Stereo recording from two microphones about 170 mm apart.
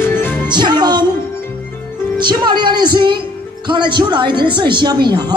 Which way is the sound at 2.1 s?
25° right (ahead or behind).